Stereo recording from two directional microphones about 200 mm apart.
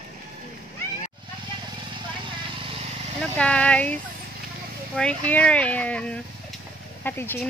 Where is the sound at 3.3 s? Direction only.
5° left (ahead or behind).